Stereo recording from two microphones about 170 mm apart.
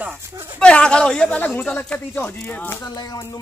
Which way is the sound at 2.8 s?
20° left (ahead or behind).